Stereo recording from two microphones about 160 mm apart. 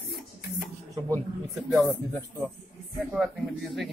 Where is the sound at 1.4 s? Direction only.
Centre (ahead or behind).